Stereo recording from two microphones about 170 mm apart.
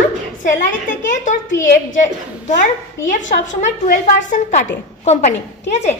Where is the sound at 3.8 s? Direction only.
50° left (ahead or behind).